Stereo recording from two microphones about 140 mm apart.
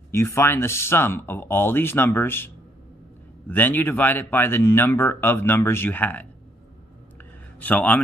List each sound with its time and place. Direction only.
0.1 s speech: 20° left (ahead or behind)
7.5 s a man's voice: 10° left (ahead or behind)